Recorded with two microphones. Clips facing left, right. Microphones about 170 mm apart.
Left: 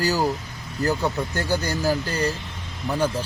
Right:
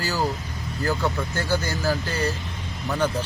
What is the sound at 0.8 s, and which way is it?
Speech, 15° left (ahead or behind).